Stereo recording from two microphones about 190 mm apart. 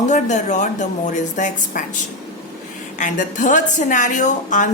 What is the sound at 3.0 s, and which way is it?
Speech, 40° left (ahead or behind).